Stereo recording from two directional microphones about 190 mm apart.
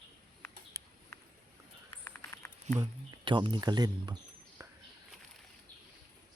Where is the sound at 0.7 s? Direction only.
15° right (ahead or behind).